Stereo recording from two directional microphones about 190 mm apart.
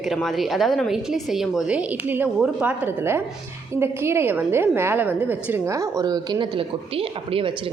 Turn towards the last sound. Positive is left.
turn(degrees=-30)  # may be behind; listen again after turning